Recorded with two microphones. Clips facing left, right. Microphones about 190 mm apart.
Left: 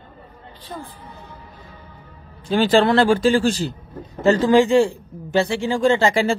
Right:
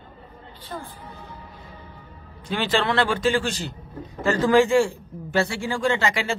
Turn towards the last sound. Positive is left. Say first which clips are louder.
# left 6 dB
turn(degrees=30)  # may be behind; listen again after turning